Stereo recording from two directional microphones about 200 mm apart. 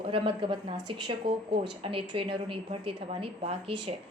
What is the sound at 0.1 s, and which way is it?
A woman's voice, 25° right (ahead or behind).